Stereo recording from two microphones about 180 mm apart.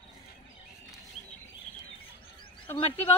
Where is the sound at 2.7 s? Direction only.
35° left (ahead or behind).